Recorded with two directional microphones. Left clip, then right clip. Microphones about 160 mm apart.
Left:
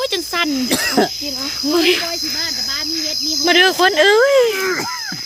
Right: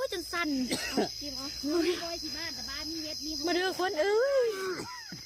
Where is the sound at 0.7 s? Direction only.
50° left (ahead or behind).